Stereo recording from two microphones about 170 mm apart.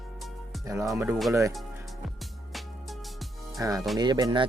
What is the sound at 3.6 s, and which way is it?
Speech, 20° right (ahead or behind).